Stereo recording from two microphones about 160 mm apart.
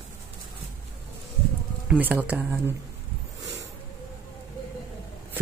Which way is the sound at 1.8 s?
10° right (ahead or behind).